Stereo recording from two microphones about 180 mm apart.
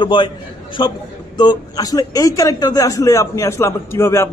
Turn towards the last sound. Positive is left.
turn(degrees=15)  # may be behind; listen again after turning